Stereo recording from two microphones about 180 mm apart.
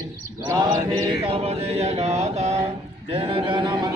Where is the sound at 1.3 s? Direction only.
35° right (ahead or behind).